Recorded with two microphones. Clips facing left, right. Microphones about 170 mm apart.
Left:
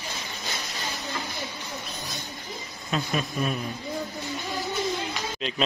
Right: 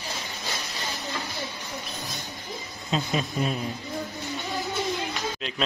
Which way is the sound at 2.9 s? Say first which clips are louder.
Right 1 dB; 20° right (ahead or behind).